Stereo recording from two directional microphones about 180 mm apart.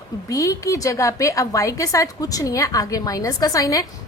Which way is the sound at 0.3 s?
20° left (ahead or behind).